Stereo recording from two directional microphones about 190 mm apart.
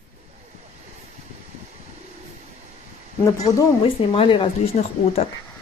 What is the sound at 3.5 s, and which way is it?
Speech, 25° left (ahead or behind).